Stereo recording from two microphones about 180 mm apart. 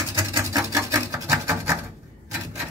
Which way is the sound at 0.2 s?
15° right (ahead or behind).